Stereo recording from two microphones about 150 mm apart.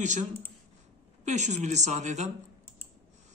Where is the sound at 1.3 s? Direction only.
55° right (ahead or behind).